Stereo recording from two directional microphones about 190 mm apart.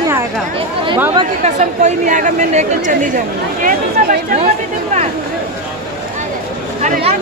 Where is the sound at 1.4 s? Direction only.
35° right (ahead or behind).